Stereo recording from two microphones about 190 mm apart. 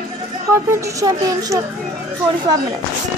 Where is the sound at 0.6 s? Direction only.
15° right (ahead or behind).